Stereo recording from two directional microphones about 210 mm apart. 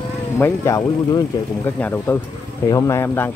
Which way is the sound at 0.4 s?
15° left (ahead or behind).